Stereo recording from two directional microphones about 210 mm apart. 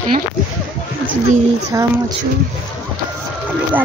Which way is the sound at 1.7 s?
15° right (ahead or behind).